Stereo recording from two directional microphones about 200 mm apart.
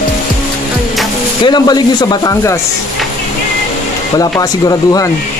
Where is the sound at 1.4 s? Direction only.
20° left (ahead or behind).